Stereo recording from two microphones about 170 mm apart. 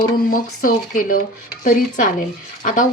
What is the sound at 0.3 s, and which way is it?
Speech, 55° left (ahead or behind).